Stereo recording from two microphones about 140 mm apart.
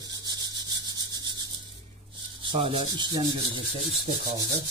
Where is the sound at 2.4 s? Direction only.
40° right (ahead or behind).